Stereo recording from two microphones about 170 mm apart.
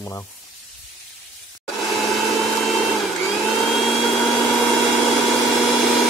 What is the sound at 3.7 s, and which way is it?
Vacuum cleaner, centre (ahead or behind).